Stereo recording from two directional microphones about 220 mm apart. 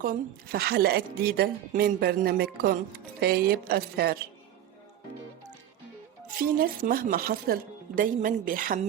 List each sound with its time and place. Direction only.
0.0 s a woman's voice: 40° right (ahead or behind)
6.6 s speech: 40° right (ahead or behind)